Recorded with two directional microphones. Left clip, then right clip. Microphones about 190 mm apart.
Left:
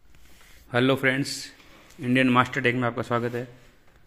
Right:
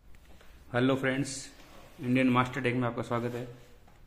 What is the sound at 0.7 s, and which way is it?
A man's voice, 25° left (ahead or behind).